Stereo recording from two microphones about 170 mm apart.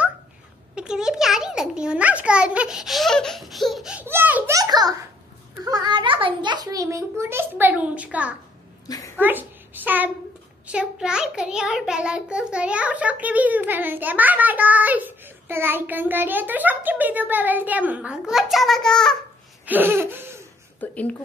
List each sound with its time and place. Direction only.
0.7 s a child's voice: 5° right (ahead or behind)
4.6 s a child's voice: 20° right (ahead or behind)
8.8 s a sound: 20° left (ahead or behind)
9.2 s a child's voice: 10° right (ahead or behind)
19.6 s laughter: 10° right (ahead or behind)
20.8 s speech: 10° left (ahead or behind)